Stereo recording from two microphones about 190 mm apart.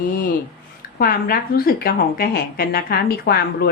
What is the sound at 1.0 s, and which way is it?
A woman's voice, 50° left (ahead or behind).